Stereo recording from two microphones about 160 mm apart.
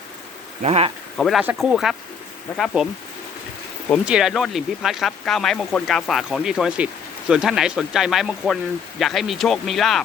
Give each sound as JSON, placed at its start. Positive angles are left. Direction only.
{"t": 0.6, "sound": "speech", "side_deg": -40}
{"t": 1.1, "sound": "speech", "side_deg": 5}
{"t": 2.5, "sound": "speech", "side_deg": 10}
{"t": 4.0, "sound": "speech", "side_deg": -5}